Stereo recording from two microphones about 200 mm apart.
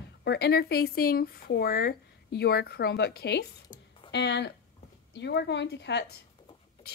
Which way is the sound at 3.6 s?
20° left (ahead or behind).